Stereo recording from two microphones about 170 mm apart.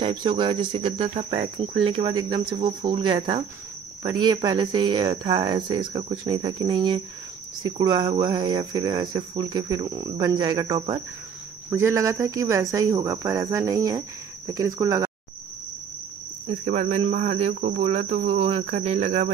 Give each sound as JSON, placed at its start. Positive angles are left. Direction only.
{"t": 0.0, "sound": "speech", "side_deg": -30}
{"t": 2.0, "sound": "speech", "side_deg": -25}
{"t": 16.4, "sound": "speech", "side_deg": -40}